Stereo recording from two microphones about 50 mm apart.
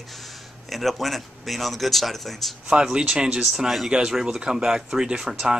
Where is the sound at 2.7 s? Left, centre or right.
Centre.